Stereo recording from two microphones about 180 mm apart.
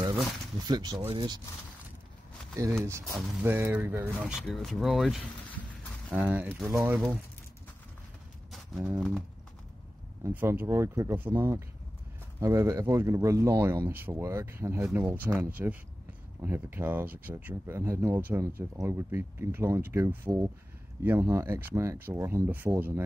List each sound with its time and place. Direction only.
0.7 s speech: 25° right (ahead or behind)
2.8 s speech: 15° right (ahead or behind)
8.5 s a sound: 5° right (ahead or behind)
10.2 s speech: 10° right (ahead or behind)